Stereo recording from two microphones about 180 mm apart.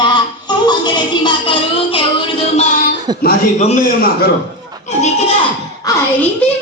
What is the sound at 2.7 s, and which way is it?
A man's voice, 50° left (ahead or behind).